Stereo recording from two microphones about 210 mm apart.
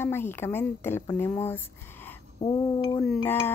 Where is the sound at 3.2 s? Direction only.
10° left (ahead or behind).